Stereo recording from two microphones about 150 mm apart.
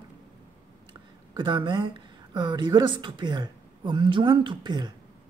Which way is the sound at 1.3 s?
30° right (ahead or behind).